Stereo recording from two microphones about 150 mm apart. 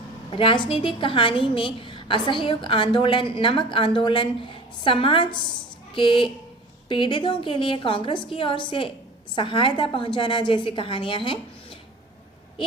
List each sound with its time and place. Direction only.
0.3 s a woman's voice: 35° left (ahead or behind)